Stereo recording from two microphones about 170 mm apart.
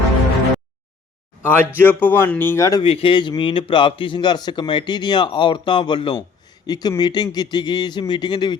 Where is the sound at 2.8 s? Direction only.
30° left (ahead or behind).